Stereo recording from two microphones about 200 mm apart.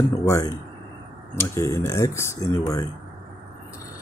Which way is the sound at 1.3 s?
15° left (ahead or behind).